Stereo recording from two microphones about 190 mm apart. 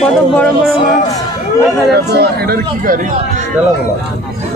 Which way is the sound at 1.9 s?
60° right (ahead or behind).